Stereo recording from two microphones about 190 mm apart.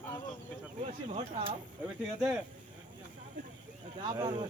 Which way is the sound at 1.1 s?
30° right (ahead or behind).